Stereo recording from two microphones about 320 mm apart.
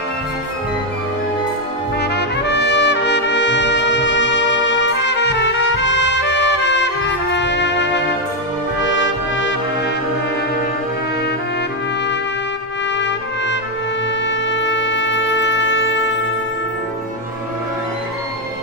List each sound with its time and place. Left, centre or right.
2.0 s trumpet: left
8.9 s brass instrument: left
12.9 s trumpet: left
14.2 s music: left